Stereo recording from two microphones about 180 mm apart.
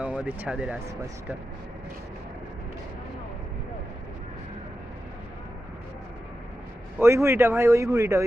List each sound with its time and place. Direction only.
0.0 s speech: 10° right (ahead or behind)
7.0 s speech: 15° right (ahead or behind)